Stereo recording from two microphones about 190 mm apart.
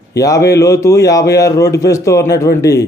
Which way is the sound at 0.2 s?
20° left (ahead or behind).